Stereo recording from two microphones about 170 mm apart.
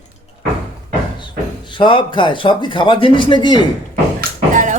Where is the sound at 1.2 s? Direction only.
30° left (ahead or behind).